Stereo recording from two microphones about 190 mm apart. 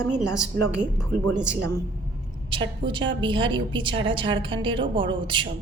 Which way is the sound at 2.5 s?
25° right (ahead or behind).